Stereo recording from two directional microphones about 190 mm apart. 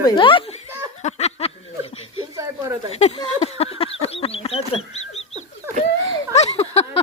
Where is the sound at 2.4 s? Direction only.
10° right (ahead or behind).